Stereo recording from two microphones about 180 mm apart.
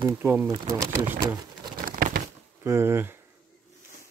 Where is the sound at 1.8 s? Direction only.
50° right (ahead or behind).